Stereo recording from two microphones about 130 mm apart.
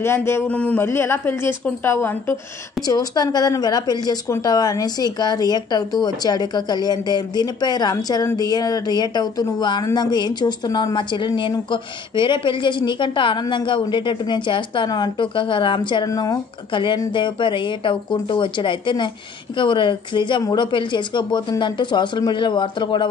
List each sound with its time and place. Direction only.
0.0 s speech: 20° left (ahead or behind)
2.9 s speech: 30° left (ahead or behind)
16.1 s speech: 25° left (ahead or behind)
16.7 s speech: 40° left (ahead or behind)